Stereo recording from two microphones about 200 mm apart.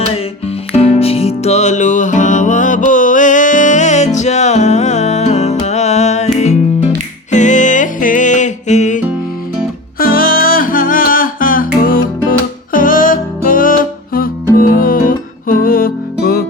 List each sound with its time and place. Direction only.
0.8 s music: 30° left (ahead or behind)
10.0 s music: 45° left (ahead or behind)